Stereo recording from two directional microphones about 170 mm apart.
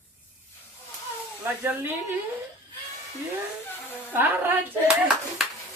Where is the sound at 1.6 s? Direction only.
10° right (ahead or behind).